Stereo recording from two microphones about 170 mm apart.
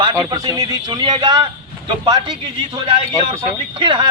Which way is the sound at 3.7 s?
30° right (ahead or behind).